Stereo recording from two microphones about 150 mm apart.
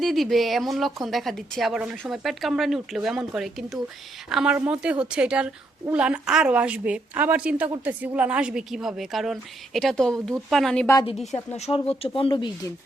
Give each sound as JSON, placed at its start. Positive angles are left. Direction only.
{"t": 0.0, "sound": "a woman's voice", "side_deg": 0}
{"t": 11.5, "sound": "speech", "side_deg": 45}